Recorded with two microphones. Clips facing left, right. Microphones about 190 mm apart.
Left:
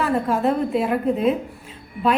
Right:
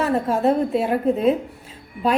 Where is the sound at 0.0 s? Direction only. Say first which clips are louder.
Right 1 dB; 25° right (ahead or behind).